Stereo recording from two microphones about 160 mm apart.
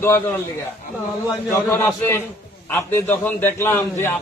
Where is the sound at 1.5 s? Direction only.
15° left (ahead or behind).